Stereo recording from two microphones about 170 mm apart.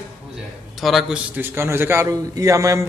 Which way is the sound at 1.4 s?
15° right (ahead or behind).